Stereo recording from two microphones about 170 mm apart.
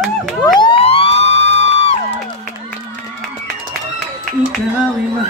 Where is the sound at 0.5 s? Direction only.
30° left (ahead or behind).